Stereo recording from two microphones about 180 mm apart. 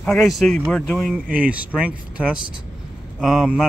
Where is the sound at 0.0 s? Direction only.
Centre (ahead or behind).